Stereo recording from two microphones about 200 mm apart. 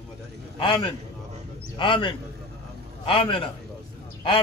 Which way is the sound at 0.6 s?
25° left (ahead or behind).